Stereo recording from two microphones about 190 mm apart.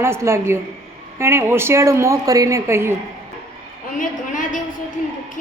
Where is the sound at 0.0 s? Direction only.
15° right (ahead or behind).